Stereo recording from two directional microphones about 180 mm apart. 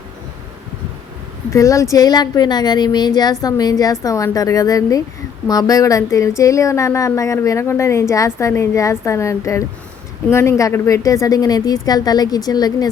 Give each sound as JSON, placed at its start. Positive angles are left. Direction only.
{"t": 1.5, "sound": "a woman's voice", "side_deg": 15}